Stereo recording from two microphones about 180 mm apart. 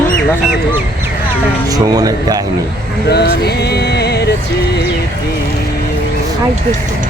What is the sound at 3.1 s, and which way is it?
Music, 65° left (ahead or behind).